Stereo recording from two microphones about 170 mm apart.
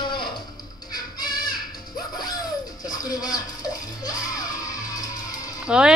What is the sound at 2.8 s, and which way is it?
Speech, 20° left (ahead or behind).